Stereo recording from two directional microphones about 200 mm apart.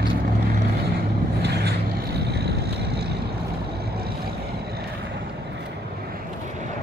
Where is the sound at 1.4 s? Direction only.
55° right (ahead or behind).